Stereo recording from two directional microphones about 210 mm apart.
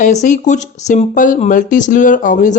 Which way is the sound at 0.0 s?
35° left (ahead or behind).